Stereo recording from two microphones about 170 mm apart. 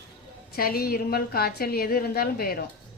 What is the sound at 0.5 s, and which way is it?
A woman's voice, 60° left (ahead or behind).